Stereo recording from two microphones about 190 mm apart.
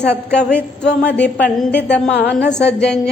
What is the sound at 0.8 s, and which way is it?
Speech, 60° left (ahead or behind).